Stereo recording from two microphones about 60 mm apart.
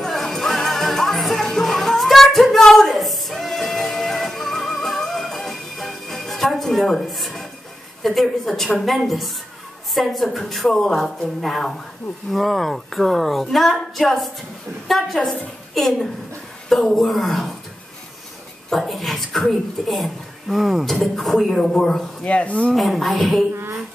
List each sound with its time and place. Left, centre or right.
0.0 s music: centre
8.0 s speech: centre
18.7 s speech: centre
22.2 s speech: left
22.8 s speech: centre